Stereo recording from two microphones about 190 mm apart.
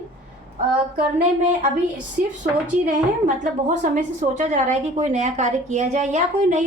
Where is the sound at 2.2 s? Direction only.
50° right (ahead or behind).